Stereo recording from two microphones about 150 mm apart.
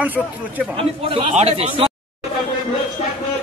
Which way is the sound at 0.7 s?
40° right (ahead or behind).